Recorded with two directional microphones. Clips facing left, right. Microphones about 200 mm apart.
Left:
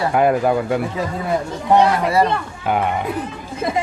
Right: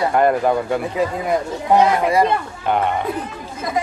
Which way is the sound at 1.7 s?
15° right (ahead or behind).